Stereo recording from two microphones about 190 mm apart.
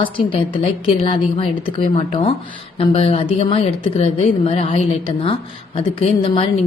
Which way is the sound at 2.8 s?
30° left (ahead or behind).